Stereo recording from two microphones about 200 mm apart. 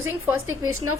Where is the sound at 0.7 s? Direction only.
90° right.